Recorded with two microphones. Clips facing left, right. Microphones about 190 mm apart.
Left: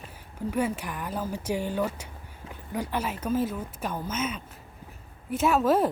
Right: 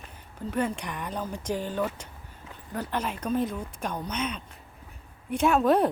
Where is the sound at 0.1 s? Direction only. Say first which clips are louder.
Left 2 dB; 10° left (ahead or behind).